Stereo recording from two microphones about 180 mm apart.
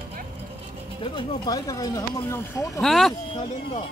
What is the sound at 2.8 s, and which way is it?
Speech, centre (ahead or behind).